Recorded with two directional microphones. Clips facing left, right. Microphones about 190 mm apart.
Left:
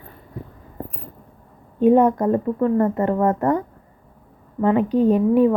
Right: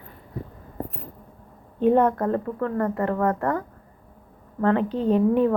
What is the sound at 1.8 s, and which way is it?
A woman's voice, 10° left (ahead or behind).